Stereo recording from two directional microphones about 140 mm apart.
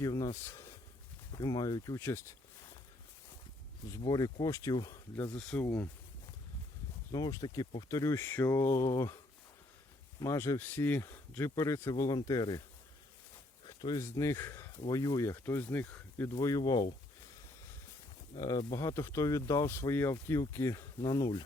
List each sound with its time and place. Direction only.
0.0 s speech: 25° left (ahead or behind)
0.4 s a sound: 20° left (ahead or behind)
1.3 s speech: 30° left (ahead or behind)
3.9 s speech: 25° left (ahead or behind)
5.1 s speech: 10° left (ahead or behind)
7.1 s speech: 25° left (ahead or behind)
10.2 s speech: 20° left (ahead or behind)
13.7 s speech: 25° left (ahead or behind)
18.3 s speech: 25° left (ahead or behind)